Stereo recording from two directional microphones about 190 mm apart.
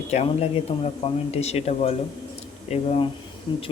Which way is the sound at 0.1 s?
35° left (ahead or behind).